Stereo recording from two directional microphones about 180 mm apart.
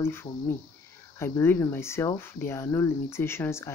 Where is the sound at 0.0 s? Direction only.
15° left (ahead or behind).